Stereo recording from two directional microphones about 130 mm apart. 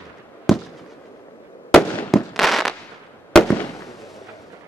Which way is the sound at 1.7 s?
5° left (ahead or behind).